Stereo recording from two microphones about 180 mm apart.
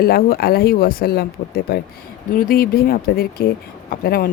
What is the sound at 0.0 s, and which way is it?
Speech, 55° left (ahead or behind).